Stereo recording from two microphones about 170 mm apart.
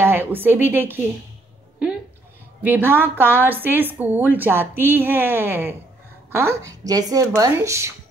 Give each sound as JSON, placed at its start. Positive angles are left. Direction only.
{"t": 0.0, "sound": "a woman's voice", "side_deg": -15}
{"t": 2.6, "sound": "a woman's voice", "side_deg": -10}